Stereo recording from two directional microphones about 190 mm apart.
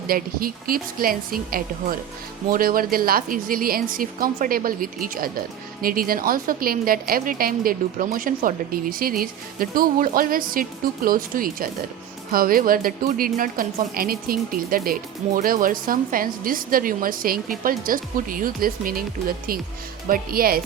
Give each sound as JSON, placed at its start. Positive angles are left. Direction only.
{"t": 0.1, "sound": "a woman's voice", "side_deg": -50}
{"t": 20.1, "sound": "a woman's voice", "side_deg": -50}